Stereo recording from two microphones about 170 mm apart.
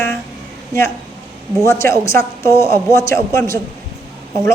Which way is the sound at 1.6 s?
15° left (ahead or behind).